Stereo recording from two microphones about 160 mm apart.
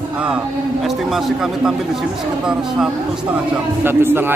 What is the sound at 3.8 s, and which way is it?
Speech, 15° right (ahead or behind).